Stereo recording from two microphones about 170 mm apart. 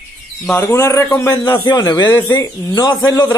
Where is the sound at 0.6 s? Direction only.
15° left (ahead or behind).